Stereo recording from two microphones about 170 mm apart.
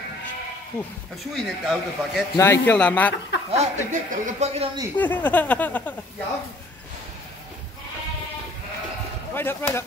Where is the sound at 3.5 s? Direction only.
45° right (ahead or behind).